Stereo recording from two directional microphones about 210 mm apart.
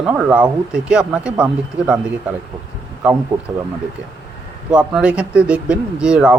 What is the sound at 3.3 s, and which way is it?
Speech, 20° right (ahead or behind).